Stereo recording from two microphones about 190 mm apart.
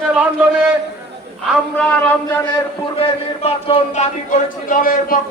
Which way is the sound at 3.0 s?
30° left (ahead or behind).